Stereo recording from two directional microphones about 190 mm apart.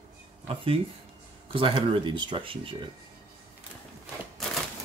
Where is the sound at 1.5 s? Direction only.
25° right (ahead or behind).